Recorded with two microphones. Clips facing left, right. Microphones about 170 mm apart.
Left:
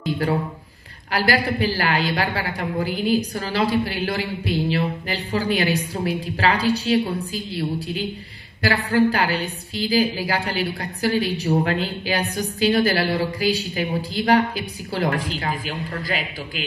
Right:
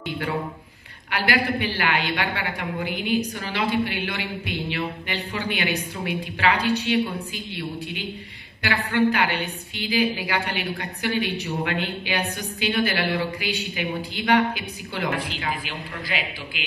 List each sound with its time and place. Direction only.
1.1 s a woman's voice: 35° left (ahead or behind)